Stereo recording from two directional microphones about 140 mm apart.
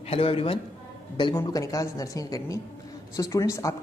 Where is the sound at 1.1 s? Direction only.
30° left (ahead or behind).